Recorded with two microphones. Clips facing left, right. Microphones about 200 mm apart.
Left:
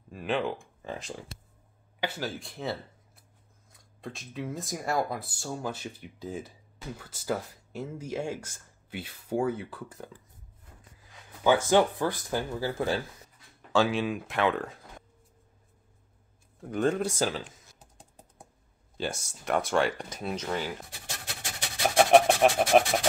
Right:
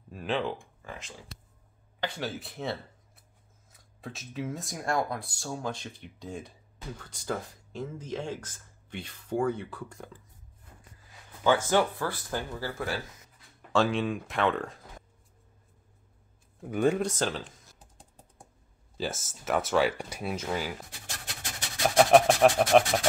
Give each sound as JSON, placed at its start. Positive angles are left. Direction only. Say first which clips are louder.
{"t": 0.1, "sound": "speech", "louder": "left 1 dB", "side_deg": 0}
{"t": 0.8, "sound": "speech", "louder": "left 6 dB", "side_deg": 35}
{"t": 2.0, "sound": "speech", "louder": "left 1 dB", "side_deg": 5}
{"t": 11.4, "sound": "speech", "louder": "left 2 dB", "side_deg": 15}
{"t": 13.7, "sound": "speech", "louder": "left 1 dB", "side_deg": 0}
{"t": 16.6, "sound": "speech", "louder": "right 1 dB", "side_deg": -10}
{"t": 17.0, "sound": "speech", "louder": "left 1 dB", "side_deg": 10}
{"t": 18.9, "sound": "speech", "louder": "even", "side_deg": 0}
{"t": 21.9, "sound": "speech", "louder": "even", "side_deg": 0}